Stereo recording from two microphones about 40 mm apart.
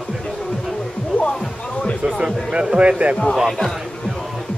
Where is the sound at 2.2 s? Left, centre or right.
Right.